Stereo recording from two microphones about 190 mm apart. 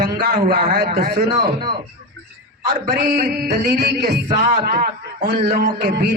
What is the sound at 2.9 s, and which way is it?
Music, 60° right (ahead or behind).